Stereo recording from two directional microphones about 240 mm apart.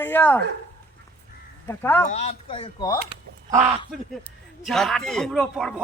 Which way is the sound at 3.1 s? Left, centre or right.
Centre.